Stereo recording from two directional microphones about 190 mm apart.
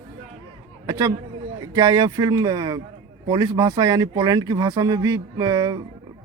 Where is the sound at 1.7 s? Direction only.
20° right (ahead or behind).